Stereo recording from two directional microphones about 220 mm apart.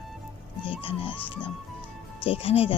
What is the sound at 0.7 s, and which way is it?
Speech, 25° left (ahead or behind).